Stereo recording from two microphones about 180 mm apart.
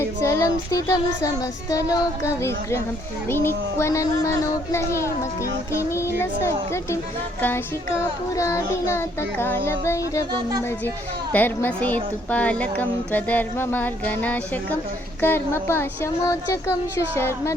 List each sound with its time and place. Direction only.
0.0 s child singing: 15° left (ahead or behind)
2.2 s a child's voice: 15° left (ahead or behind)